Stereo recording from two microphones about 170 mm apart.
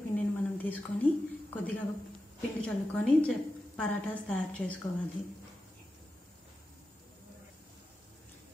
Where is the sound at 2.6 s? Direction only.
5° left (ahead or behind).